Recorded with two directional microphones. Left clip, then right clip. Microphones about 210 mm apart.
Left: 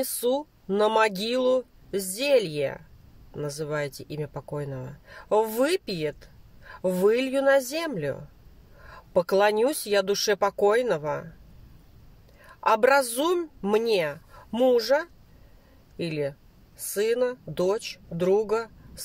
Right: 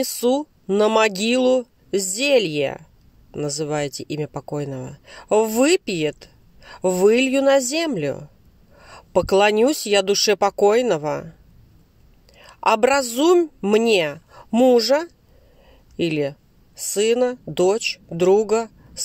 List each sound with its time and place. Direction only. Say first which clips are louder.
0.0 s speech: right 6 dB; 30° right (ahead or behind)
12.4 s a woman's voice: right 4 dB; 35° right (ahead or behind)